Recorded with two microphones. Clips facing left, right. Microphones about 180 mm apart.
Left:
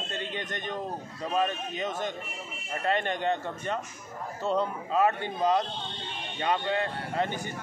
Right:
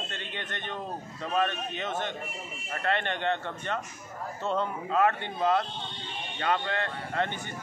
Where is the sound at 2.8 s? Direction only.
10° left (ahead or behind).